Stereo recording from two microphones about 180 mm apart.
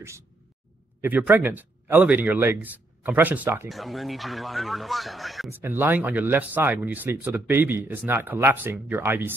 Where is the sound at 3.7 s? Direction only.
Centre (ahead or behind).